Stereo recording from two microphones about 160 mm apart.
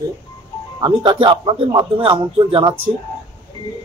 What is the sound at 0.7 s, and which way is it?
Speech, 30° right (ahead or behind).